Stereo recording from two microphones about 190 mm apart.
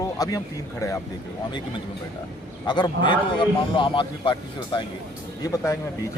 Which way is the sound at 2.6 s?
25° left (ahead or behind).